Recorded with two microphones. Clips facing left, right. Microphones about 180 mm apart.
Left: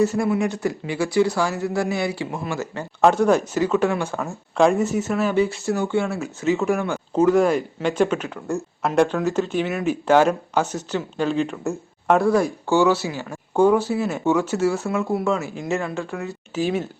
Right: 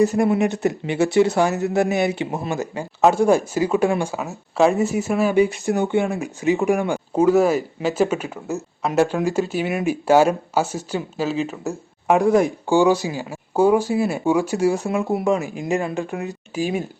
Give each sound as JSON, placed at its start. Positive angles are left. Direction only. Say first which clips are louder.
{"t": 0.0, "sound": "speech", "louder": "right 3 dB", "side_deg": -20}
{"t": 12.1, "sound": "speech", "louder": "right 2 dB", "side_deg": -20}